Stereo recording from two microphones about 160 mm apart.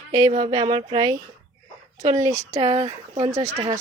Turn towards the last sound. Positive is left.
turn(degrees=-20)  # may be behind; listen again after turning